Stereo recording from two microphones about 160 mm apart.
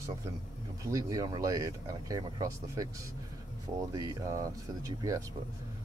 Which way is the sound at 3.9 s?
20° right (ahead or behind).